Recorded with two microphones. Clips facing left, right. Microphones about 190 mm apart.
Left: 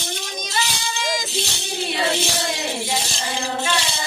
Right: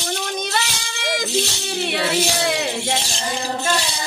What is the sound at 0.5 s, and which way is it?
Child singing, 60° right (ahead or behind).